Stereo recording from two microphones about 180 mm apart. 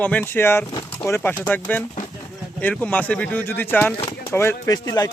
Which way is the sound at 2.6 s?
10° left (ahead or behind).